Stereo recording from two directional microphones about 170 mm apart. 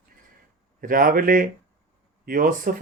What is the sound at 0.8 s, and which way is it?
Speech, 55° right (ahead or behind).